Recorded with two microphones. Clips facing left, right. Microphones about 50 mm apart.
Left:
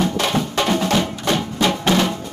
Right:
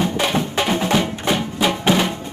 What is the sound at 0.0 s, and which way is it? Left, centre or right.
Music, centre.